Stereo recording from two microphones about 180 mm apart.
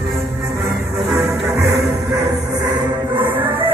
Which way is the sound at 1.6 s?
15° right (ahead or behind).